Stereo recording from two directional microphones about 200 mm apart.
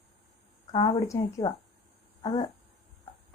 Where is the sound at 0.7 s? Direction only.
20° left (ahead or behind).